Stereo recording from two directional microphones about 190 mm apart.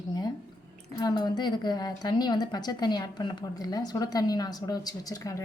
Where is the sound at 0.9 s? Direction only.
20° left (ahead or behind).